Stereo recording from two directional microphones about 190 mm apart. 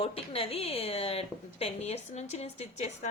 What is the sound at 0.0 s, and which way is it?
A woman's voice, 30° left (ahead or behind).